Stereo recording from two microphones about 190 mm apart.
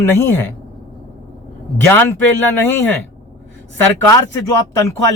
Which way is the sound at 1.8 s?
10° left (ahead or behind).